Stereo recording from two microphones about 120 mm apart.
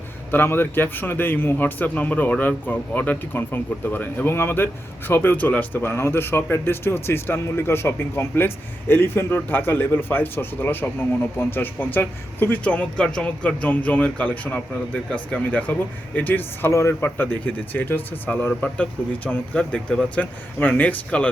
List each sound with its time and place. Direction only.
0.3 s a man's voice: 15° left (ahead or behind)